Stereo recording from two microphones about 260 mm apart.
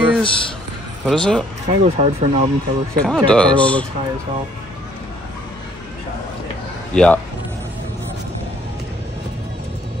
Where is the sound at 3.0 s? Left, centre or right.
Centre.